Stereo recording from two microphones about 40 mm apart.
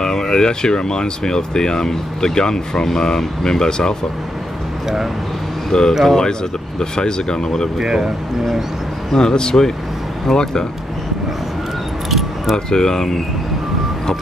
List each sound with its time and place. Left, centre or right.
0.0 s speech: centre
5.7 s speech: centre
7.8 s speech: centre
9.1 s speech: centre
12.1 s keys jangling: centre
12.5 s speech: centre